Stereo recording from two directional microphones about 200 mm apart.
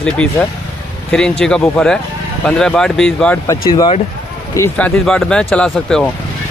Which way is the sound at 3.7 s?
20° left (ahead or behind).